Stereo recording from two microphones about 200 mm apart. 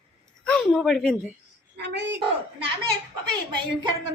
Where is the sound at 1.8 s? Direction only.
60° right (ahead or behind).